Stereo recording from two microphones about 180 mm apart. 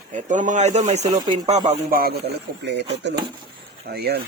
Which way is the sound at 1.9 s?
55° right (ahead or behind).